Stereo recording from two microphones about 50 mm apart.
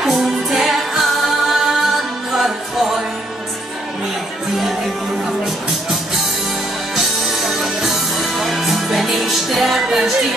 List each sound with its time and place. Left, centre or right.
0.0 s music: centre
7.0 s music: centre